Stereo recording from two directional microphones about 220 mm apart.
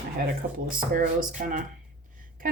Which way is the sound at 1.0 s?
35° right (ahead or behind).